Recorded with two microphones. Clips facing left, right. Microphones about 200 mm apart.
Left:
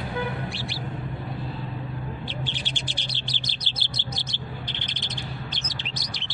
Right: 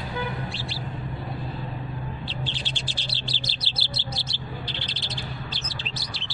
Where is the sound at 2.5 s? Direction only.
15° left (ahead or behind).